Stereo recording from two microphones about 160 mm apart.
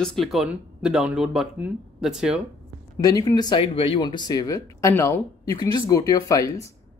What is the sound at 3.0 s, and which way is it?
Speech, 25° left (ahead or behind).